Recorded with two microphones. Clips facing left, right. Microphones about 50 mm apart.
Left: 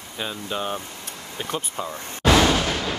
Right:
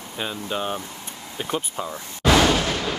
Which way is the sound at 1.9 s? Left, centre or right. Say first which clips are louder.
Left 1 dB; left.